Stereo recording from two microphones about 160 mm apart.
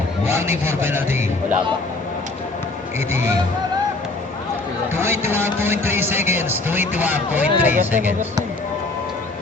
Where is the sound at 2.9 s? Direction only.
15° right (ahead or behind).